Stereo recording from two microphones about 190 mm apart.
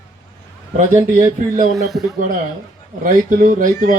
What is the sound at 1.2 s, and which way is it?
Speech, 45° right (ahead or behind).